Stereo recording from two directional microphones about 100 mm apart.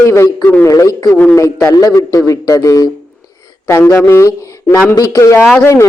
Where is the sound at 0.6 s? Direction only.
35° left (ahead or behind).